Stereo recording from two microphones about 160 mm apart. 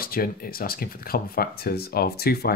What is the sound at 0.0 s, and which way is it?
Speech, 65° left (ahead or behind).